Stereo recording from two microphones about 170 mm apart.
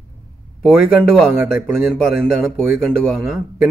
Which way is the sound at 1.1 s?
Centre (ahead or behind).